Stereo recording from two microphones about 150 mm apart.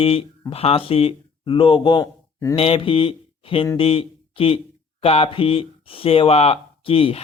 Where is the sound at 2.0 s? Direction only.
20° left (ahead or behind).